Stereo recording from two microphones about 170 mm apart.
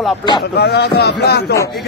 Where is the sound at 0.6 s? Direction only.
75° left (ahead or behind).